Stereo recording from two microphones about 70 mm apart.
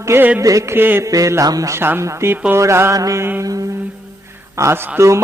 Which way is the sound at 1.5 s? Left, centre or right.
Right.